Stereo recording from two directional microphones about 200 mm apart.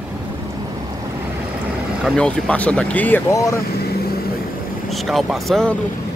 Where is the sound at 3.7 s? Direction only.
50° left (ahead or behind).